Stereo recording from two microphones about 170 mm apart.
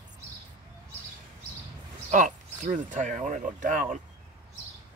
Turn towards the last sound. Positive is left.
turn(degrees=-45)  # may be behind; listen again after turning